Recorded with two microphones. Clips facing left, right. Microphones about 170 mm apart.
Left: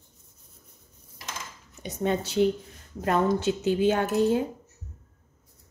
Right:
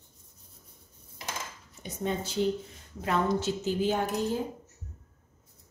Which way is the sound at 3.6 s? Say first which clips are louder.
Left 5 dB; 75° left (ahead or behind).